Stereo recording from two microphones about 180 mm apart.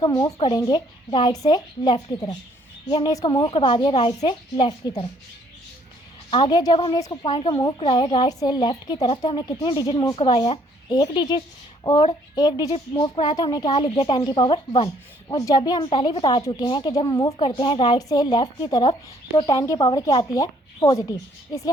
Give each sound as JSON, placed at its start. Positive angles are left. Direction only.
{"t": 0.0, "sound": "a woman's voice", "side_deg": 20}
{"t": 0.3, "sound": "a woman's voice", "side_deg": 30}
{"t": 6.3, "sound": "a woman's voice", "side_deg": 25}